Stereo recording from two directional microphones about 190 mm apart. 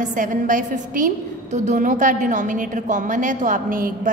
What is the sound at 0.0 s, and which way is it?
A woman's voice, 45° right (ahead or behind).